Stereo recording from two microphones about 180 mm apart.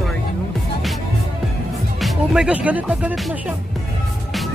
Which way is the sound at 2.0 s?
Centre (ahead or behind).